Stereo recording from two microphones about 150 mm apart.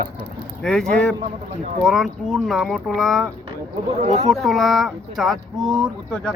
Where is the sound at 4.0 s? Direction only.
50° right (ahead or behind).